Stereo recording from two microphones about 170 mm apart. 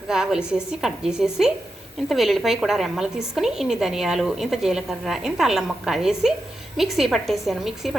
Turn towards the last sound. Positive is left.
turn(degrees=0)  # may be behind; listen again after turning